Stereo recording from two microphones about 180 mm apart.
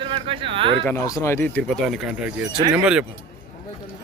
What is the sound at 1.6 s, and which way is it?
Speech, centre (ahead or behind).